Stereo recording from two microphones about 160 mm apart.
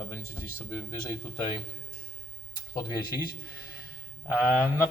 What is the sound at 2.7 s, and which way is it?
Speech, 25° left (ahead or behind).